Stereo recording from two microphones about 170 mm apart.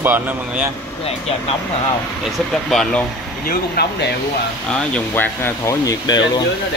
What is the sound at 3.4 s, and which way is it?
Speech, 65° left (ahead or behind).